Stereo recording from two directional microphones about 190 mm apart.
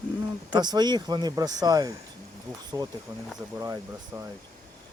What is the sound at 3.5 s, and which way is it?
Speech, 20° right (ahead or behind).